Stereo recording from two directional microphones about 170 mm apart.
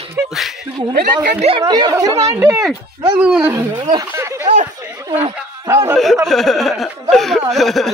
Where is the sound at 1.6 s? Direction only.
25° right (ahead or behind).